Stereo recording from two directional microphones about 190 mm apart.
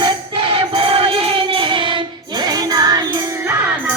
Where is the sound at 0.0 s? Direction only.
30° right (ahead or behind); by 3.6 s 10° right (ahead or behind).